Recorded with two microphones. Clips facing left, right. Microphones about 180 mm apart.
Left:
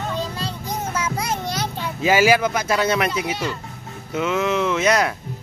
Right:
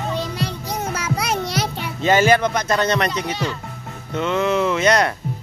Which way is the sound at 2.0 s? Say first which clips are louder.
Right 1 dB; 5° left (ahead or behind).